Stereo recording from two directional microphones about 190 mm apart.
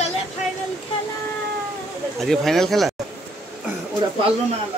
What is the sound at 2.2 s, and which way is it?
Speech, centre (ahead or behind).